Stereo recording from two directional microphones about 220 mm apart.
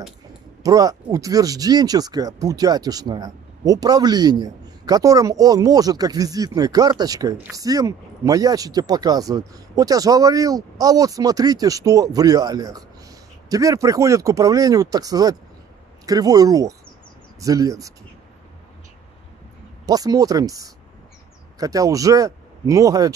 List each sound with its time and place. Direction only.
0.7 s speech: 15° right (ahead or behind)
19.9 s speech: 15° right (ahead or behind)